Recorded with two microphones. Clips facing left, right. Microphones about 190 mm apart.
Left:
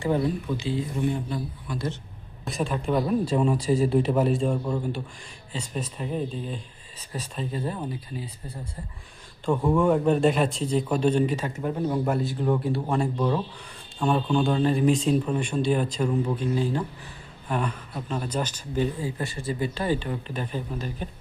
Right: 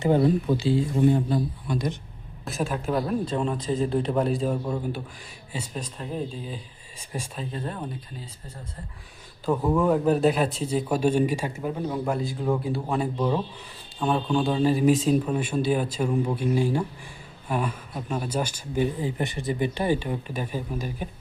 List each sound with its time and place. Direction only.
0.2 s a man's voice: 35° right (ahead or behind)
1.7 s speech: 15° right (ahead or behind)
2.4 s speech: centre (ahead or behind)
9.5 s speech: centre (ahead or behind)
11.8 s speech: centre (ahead or behind)